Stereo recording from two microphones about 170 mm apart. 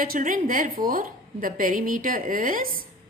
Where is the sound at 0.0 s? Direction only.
55° right (ahead or behind).